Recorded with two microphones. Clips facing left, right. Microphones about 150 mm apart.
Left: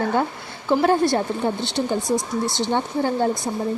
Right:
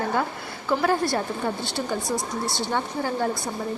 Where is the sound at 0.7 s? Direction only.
20° left (ahead or behind).